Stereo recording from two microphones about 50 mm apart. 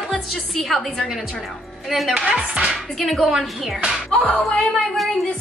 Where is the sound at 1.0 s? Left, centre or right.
Centre.